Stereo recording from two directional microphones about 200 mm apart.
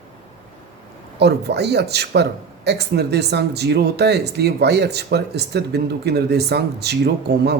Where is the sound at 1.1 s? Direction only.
55° right (ahead or behind).